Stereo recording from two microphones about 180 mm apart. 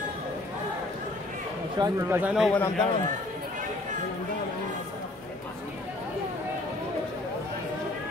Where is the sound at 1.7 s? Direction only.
20° right (ahead or behind).